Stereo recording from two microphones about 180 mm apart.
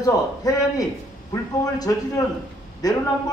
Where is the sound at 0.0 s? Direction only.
20° left (ahead or behind).